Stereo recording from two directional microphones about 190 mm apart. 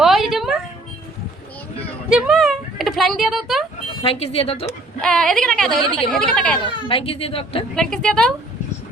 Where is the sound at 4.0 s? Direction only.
30° left (ahead or behind).